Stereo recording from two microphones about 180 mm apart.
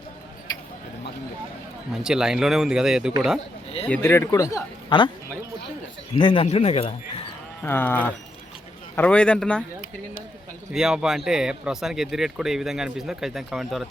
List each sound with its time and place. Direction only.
2.0 s speech: 5° right (ahead or behind)
3.8 s a man's voice: 10° left (ahead or behind); by 5.1 s 25° left (ahead or behind)
6.1 s a man's voice: 30° left (ahead or behind)
7.6 s a man's voice: 10° left (ahead or behind)
10.7 s speech: 5° right (ahead or behind)